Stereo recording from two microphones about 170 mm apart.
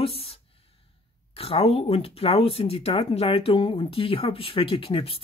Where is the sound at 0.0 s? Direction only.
35° left (ahead or behind).